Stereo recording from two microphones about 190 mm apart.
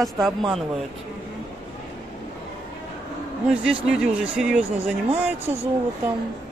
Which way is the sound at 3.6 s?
5° right (ahead or behind).